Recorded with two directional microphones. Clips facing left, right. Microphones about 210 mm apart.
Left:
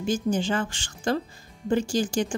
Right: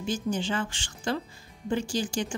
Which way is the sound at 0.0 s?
45° left (ahead or behind).